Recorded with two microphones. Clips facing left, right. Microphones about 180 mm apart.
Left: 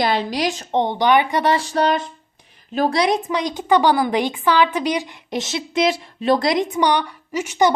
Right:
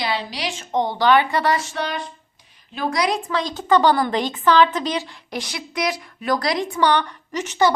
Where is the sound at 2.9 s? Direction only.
25° left (ahead or behind).